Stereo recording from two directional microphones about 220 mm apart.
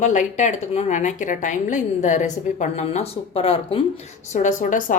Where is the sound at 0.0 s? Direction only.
35° left (ahead or behind).